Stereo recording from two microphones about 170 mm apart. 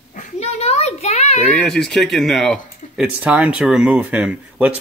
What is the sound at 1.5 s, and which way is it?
Speech, centre (ahead or behind).